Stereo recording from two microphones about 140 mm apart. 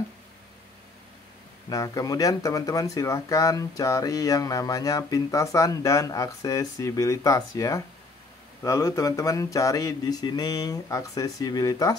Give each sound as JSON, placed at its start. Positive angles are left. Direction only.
{"t": 1.7, "sound": "speech", "side_deg": 25}